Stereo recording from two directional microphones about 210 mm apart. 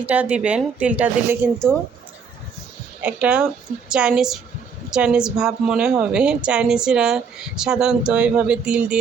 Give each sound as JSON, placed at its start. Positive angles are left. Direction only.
{"t": 0.0, "sound": "speech", "side_deg": -5}
{"t": 3.0, "sound": "a woman's voice", "side_deg": -5}